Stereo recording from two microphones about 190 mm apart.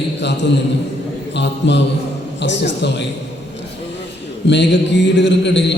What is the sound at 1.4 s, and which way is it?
A man's voice, 65° left (ahead or behind).